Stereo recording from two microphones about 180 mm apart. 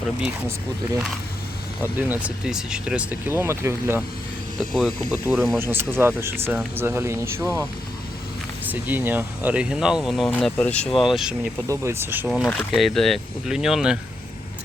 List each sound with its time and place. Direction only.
1.8 s speech: 10° right (ahead or behind)
4.7 s speech: centre (ahead or behind)
5.5 s speech: 15° right (ahead or behind)
8.7 s speech: 10° right (ahead or behind)
11.7 s speech: 15° right (ahead or behind)
12.3 s speech: centre (ahead or behind)